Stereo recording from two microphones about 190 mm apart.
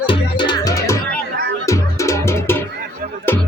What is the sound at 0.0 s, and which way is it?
Music, 25° left (ahead or behind).